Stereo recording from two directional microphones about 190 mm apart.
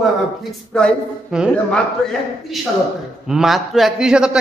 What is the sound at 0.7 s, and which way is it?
Speech, 5° left (ahead or behind).